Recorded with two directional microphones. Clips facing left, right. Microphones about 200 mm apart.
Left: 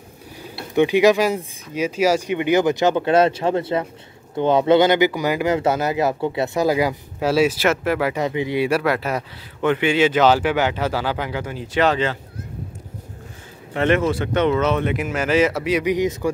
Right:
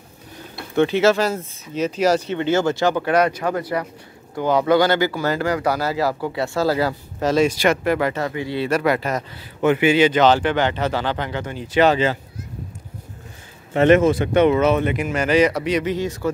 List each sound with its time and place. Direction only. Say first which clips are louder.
0.6 s speech: left 2 dB; 15° left (ahead or behind)
8.2 s speech: left 3 dB; 20° left (ahead or behind)
9.6 s speech: right 2 dB; 5° right (ahead or behind)
13.7 s speech: right 5 dB; 20° right (ahead or behind); by 16.3 s 15° left (ahead or behind)